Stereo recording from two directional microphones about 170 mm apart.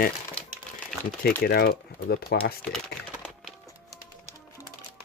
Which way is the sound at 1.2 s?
60° left (ahead or behind).